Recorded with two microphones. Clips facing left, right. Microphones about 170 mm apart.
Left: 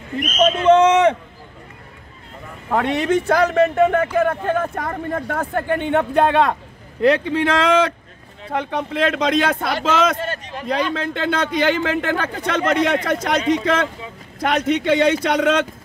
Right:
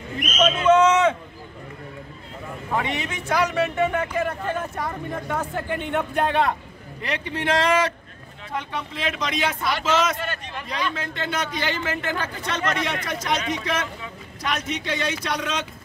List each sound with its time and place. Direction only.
0.2 s speech: 50° left (ahead or behind)
0.7 s speech: 30° left (ahead or behind)
2.7 s a man's voice: 55° left (ahead or behind); by 6.5 s 85° left
7.2 s a man's voice: 55° left (ahead or behind)
10.1 s a man's voice: 35° left (ahead or behind)
10.7 s a man's voice: 60° left (ahead or behind)
14.4 s a man's voice: 60° left (ahead or behind)